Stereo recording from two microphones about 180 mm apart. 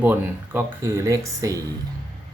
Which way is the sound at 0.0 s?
10° right (ahead or behind).